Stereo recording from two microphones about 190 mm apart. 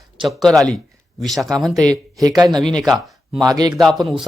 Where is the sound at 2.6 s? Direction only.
Centre (ahead or behind).